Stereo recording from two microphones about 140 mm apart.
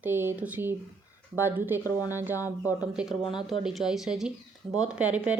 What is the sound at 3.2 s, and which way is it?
Speech, 35° left (ahead or behind).